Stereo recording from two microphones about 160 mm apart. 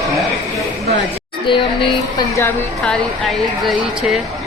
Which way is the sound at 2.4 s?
5° left (ahead or behind).